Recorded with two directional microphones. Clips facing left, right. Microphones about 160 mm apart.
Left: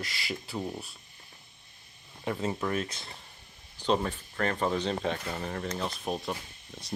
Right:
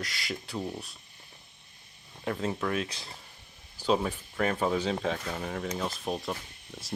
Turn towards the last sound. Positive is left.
turn(degrees=0)  # may be behind; listen again after turning